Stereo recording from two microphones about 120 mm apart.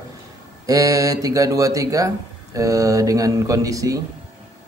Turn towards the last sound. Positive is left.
turn(degrees=-30)  # may be behind; listen again after turning